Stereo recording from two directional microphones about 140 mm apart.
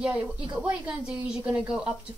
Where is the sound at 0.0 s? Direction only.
10° right (ahead or behind).